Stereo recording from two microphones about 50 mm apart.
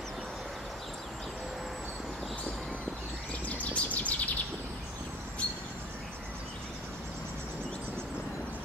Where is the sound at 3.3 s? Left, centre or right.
Left.